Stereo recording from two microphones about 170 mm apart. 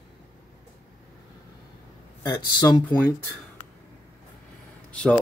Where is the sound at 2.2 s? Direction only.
25° left (ahead or behind).